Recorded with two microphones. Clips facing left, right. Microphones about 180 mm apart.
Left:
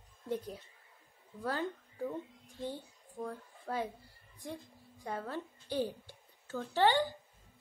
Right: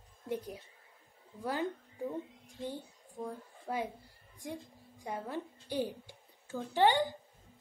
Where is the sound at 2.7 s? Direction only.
15° right (ahead or behind).